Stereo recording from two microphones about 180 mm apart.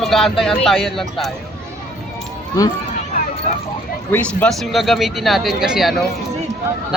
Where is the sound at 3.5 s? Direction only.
40° left (ahead or behind).